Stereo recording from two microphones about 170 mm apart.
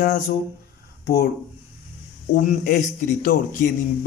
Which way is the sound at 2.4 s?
45° left (ahead or behind).